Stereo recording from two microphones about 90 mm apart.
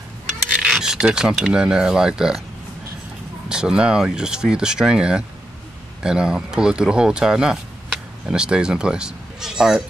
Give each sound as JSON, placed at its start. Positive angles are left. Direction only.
{"t": 0.6, "sound": "speech", "side_deg": -5}
{"t": 3.4, "sound": "speech", "side_deg": -10}